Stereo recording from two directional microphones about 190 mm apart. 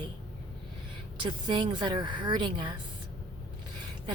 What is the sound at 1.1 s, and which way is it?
Speech, 25° right (ahead or behind).